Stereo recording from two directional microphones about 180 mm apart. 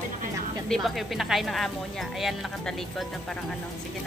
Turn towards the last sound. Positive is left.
turn(degrees=0)  # may be behind; listen again after turning